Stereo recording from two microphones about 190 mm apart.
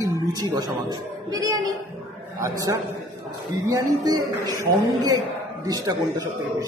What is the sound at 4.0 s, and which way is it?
Speech, 20° right (ahead or behind).